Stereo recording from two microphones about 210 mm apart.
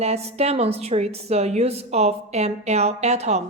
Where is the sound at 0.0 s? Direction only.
30° right (ahead or behind).